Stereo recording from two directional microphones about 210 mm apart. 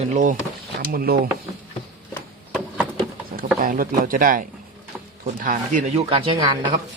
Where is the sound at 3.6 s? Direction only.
40° right (ahead or behind).